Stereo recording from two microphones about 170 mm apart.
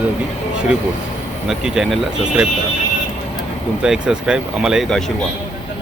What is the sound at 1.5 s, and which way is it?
Speech, centre (ahead or behind).